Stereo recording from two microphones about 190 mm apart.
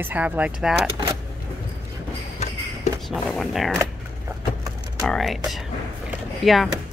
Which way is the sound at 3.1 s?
Centre (ahead or behind).